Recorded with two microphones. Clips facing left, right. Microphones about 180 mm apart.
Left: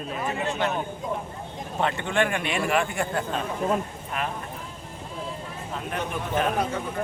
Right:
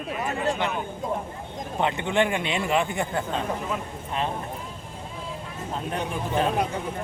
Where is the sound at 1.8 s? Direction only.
20° right (ahead or behind).